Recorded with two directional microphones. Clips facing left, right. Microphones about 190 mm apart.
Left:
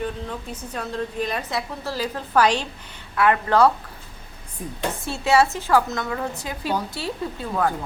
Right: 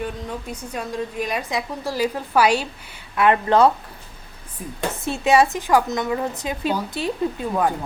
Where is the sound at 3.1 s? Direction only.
20° right (ahead or behind).